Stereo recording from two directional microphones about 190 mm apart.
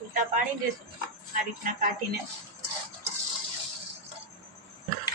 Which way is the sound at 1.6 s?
40° right (ahead or behind).